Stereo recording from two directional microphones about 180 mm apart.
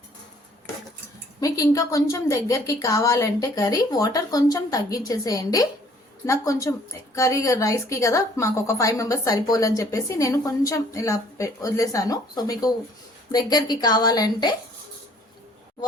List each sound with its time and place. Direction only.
1.4 s a woman's voice: 20° left (ahead or behind)